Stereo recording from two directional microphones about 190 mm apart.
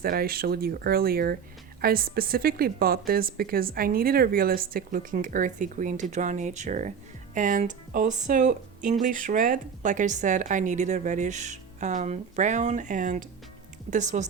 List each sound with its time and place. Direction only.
0.0 s speech: 50° right (ahead or behind)